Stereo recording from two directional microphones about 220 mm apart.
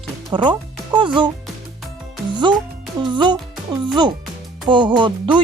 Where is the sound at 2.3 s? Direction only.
20° right (ahead or behind).